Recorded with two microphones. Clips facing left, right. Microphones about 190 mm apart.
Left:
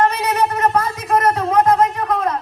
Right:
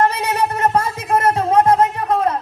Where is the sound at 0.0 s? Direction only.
30° right (ahead or behind).